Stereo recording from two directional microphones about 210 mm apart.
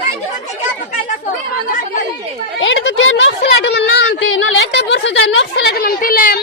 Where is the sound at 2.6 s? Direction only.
60° left (ahead or behind).